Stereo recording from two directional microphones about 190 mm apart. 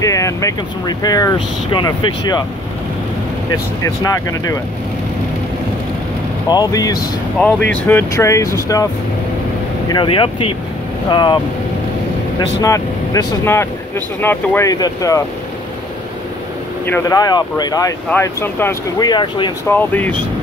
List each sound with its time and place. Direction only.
0.0 s speech: 15° left (ahead or behind)
3.8 s speech: 15° left (ahead or behind)
6.5 s speech: 20° left (ahead or behind)
7.3 s speech: 10° left (ahead or behind)
9.8 s speech: 25° left (ahead or behind)
12.4 s speech: 20° left (ahead or behind)
16.8 s speech: 15° left (ahead or behind)
19.7 s speech: 10° left (ahead or behind)